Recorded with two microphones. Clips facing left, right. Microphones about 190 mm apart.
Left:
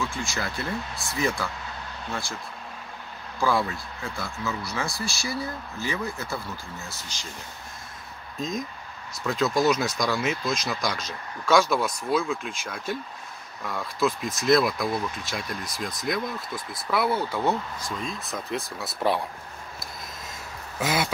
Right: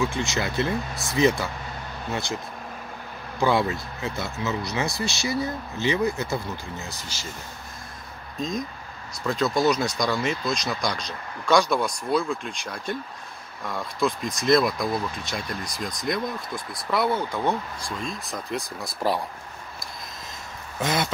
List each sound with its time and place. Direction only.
0.0 s speech: 20° right (ahead or behind)
3.3 s speech: 20° right (ahead or behind)
8.4 s speech: centre (ahead or behind)
20.8 s speech: 5° left (ahead or behind)